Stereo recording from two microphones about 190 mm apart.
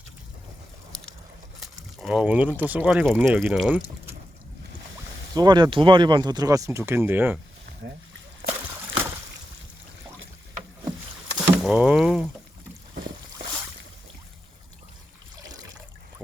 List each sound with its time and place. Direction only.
1.5 s a sound: centre (ahead or behind)
2.6 s speech: 10° right (ahead or behind)
5.3 s speech: 20° right (ahead or behind)
7.8 s speech: 65° right (ahead or behind)
11.3 s rowboat: 10° right (ahead or behind)
11.6 s speech: 5° right (ahead or behind)